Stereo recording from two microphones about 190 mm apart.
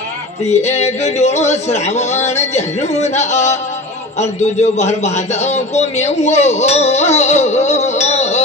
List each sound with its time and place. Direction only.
0.5 s a man's voice: 35° left (ahead or behind)